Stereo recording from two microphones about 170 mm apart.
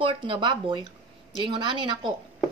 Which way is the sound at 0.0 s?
30° right (ahead or behind).